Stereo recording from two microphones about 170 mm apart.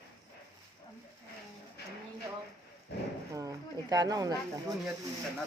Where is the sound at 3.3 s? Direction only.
20° right (ahead or behind).